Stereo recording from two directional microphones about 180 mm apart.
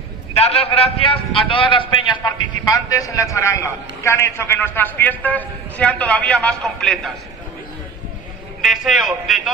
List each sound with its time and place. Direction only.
0.3 s a man's voice: 35° left (ahead or behind); by 7.1 s 5° left (ahead or behind)
8.6 s a man's voice: centre (ahead or behind)